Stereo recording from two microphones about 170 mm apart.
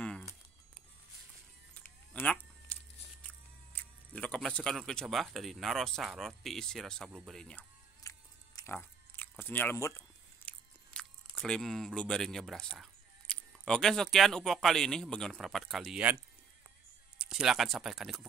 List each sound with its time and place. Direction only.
2.1 s speech: 10° left (ahead or behind)
8.0 s biting: 20° left (ahead or behind)
8.7 s chewing: 10° left (ahead or behind)
10.9 s speech: 5° left (ahead or behind)
17.3 s speech: 5° right (ahead or behind)